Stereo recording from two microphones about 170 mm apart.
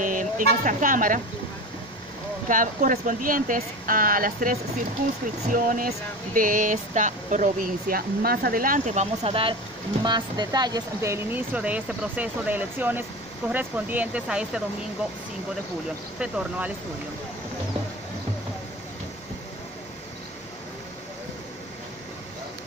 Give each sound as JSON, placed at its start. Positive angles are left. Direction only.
{"t": 0.0, "sound": "speech", "side_deg": -50}
{"t": 2.4, "sound": "speech", "side_deg": -50}
{"t": 16.2, "sound": "speech", "side_deg": -5}